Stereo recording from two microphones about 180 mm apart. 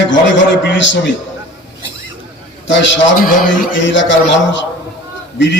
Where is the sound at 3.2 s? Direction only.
50° left (ahead or behind).